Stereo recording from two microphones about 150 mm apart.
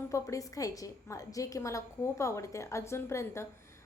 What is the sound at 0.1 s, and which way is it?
A woman's voice, 20° left (ahead or behind).